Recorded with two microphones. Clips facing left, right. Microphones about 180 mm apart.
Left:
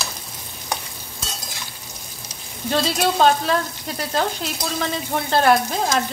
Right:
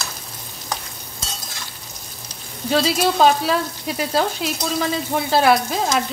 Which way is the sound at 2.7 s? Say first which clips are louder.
Right 2 dB; 5° right (ahead or behind).